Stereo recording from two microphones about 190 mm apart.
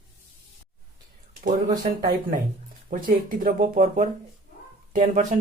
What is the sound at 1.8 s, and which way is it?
Speech, 50° right (ahead or behind).